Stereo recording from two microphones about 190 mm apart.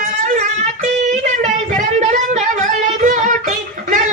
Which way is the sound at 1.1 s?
40° right (ahead or behind).